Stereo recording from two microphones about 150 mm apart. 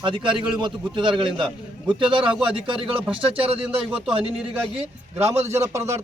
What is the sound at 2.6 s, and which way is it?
Speech, 35° right (ahead or behind).